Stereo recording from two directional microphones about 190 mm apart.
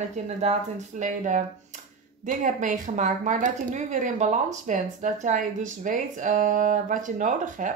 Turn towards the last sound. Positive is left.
turn(degrees=-40)  # may be behind; listen again after turning